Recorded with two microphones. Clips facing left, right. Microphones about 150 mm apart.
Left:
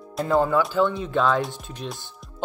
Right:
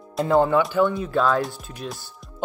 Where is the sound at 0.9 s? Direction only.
5° right (ahead or behind).